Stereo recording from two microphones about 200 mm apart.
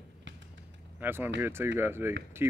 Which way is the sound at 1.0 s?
10° right (ahead or behind).